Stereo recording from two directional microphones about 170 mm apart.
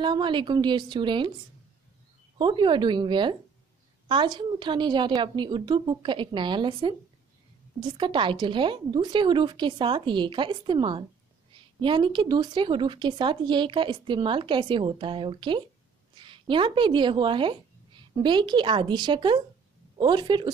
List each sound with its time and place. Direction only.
0.0 s speech: 30° right (ahead or behind)
2.3 s speech: 30° right (ahead or behind)